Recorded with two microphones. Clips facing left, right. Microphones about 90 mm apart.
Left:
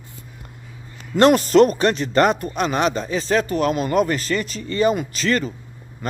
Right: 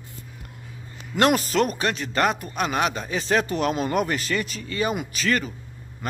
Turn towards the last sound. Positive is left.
turn(degrees=-10)  # may be behind; listen again after turning